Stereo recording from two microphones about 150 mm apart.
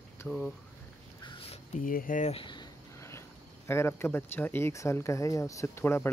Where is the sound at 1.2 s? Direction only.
35° left (ahead or behind).